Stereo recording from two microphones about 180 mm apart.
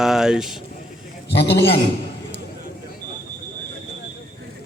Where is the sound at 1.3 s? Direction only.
70° left (ahead or behind).